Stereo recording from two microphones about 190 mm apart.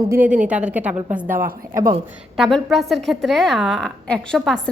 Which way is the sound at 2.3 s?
Centre (ahead or behind).